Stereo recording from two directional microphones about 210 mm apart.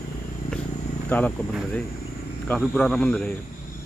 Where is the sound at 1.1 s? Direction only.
10° left (ahead or behind).